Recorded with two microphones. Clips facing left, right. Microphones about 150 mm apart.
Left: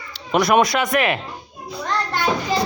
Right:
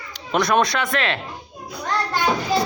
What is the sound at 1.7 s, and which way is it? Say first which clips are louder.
Child singing: even; 10° right (ahead or behind).